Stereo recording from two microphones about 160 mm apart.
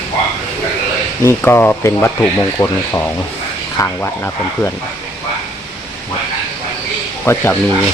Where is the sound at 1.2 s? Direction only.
15° left (ahead or behind).